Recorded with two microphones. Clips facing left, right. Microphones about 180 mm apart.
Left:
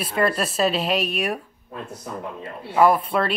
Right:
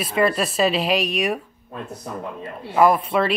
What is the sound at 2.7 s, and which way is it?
Speech, centre (ahead or behind).